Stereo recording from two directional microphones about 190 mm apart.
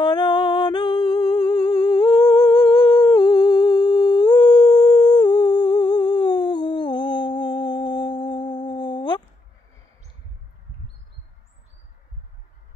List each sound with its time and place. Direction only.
0.0 s humming: 25° left (ahead or behind)